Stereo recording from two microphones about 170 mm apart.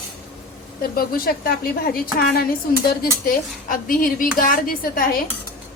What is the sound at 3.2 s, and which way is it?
Speech, 55° left (ahead or behind).